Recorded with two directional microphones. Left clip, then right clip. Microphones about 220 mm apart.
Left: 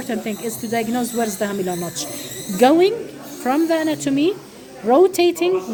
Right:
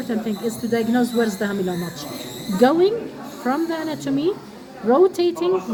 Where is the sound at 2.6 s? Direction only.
35° left (ahead or behind).